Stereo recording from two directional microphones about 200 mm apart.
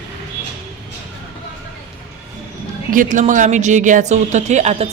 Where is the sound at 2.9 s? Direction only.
40° right (ahead or behind).